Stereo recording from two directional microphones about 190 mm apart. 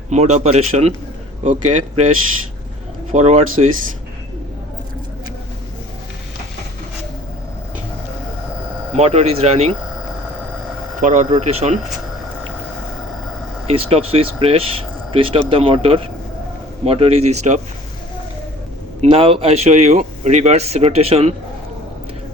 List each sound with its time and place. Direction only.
0.1 s speech: 35° right (ahead or behind)
3.1 s speech: 35° right (ahead or behind)
8.9 s speech: 35° right (ahead or behind)
11.0 s speech: 40° right (ahead or behind)
13.7 s speech: 30° right (ahead or behind)
19.1 s speech: 30° right (ahead or behind)